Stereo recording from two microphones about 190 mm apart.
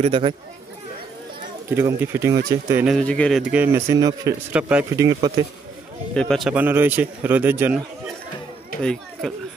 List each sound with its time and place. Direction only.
0.0 s speech: 30° right (ahead or behind)
1.7 s a man's voice: 15° right (ahead or behind)
2.8 s a man's voice: centre (ahead or behind)
3.6 s a man's voice: 15° right (ahead or behind)
5.2 s speech: 20° right (ahead or behind)
6.1 s a man's voice: 5° left (ahead or behind)
6.5 s a man's voice: 10° right (ahead or behind)
9.2 s a man's voice: centre (ahead or behind)